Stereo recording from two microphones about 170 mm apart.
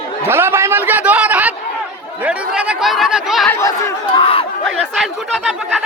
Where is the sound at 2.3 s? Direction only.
5° right (ahead or behind).